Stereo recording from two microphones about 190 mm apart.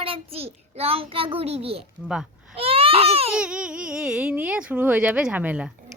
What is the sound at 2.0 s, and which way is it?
Baby cry, 5° right (ahead or behind).